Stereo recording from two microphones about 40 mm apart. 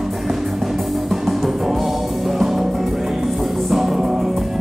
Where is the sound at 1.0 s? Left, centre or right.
Centre.